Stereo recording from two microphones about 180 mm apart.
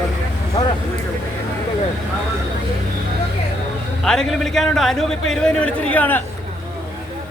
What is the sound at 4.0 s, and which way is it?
A man's voice, centre (ahead or behind).